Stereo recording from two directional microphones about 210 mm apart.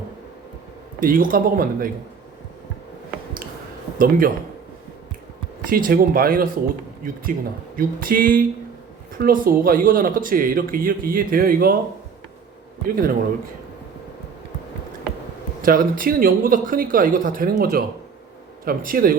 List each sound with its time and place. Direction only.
0.9 s speech: 40° right (ahead or behind)
3.9 s speech: 40° right (ahead or behind)
5.6 s speech: 45° right (ahead or behind)
7.8 s a sound: 45° right (ahead or behind)
9.1 s speech: 45° right (ahead or behind)
12.8 s speech: 45° right (ahead or behind)
15.6 s speech: 40° right (ahead or behind)